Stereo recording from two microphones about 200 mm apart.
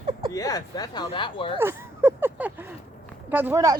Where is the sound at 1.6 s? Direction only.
10° right (ahead or behind).